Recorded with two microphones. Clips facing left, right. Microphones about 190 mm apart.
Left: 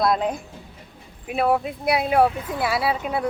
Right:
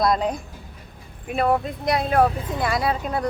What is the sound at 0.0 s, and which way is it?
Speech, 5° left (ahead or behind).